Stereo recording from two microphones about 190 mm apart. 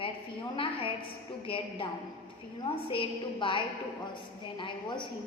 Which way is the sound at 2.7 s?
30° left (ahead or behind).